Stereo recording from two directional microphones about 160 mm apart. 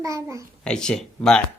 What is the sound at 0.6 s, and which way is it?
Speech, 5° left (ahead or behind).